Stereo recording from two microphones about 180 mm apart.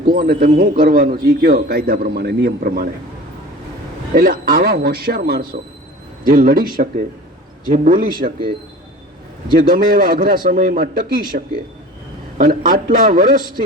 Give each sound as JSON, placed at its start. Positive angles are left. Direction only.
{"t": 0.1, "sound": "a man's voice", "side_deg": -55}
{"t": 4.1, "sound": "a man's voice", "side_deg": -50}
{"t": 9.6, "sound": "a man's voice", "side_deg": -55}